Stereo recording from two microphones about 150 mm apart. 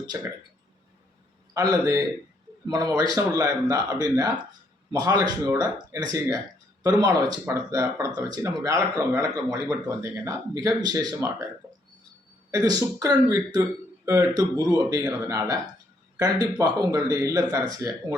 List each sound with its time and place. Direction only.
0.1 s speech: 20° right (ahead or behind)
2.6 s speech: 25° right (ahead or behind)
12.5 s speech: 25° right (ahead or behind)